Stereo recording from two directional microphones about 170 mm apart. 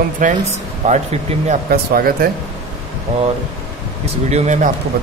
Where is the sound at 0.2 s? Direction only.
45° right (ahead or behind).